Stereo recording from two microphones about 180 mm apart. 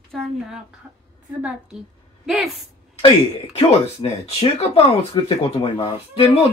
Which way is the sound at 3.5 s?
35° left (ahead or behind).